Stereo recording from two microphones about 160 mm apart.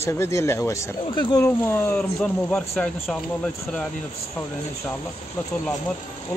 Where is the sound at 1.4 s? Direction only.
15° left (ahead or behind).